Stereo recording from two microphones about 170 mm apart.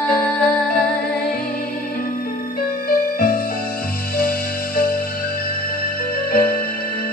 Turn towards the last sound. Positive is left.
turn(degrees=55)  # may be behind; listen again after turning